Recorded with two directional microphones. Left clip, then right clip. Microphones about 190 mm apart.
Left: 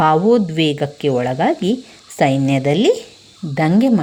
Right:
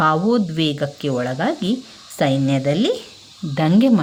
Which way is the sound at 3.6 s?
5° left (ahead or behind).